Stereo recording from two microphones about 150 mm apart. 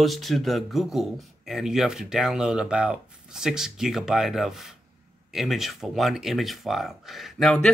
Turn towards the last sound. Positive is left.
turn(degrees=0)  # may be behind; listen again after turning